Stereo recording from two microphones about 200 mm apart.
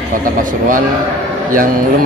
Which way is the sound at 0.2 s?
40° right (ahead or behind).